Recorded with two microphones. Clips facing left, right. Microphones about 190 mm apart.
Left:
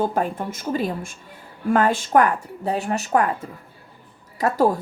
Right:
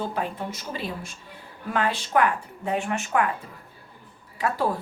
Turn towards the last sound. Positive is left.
turn(degrees=40)  # may be behind; listen again after turning